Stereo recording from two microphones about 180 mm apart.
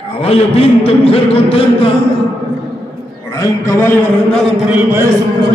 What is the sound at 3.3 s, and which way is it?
Speech, 15° left (ahead or behind).